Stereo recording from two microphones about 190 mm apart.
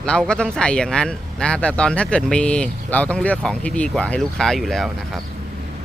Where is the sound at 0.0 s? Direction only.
5° left (ahead or behind).